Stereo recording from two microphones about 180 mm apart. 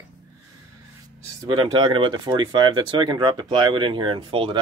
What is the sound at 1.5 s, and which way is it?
Speech, 25° right (ahead or behind).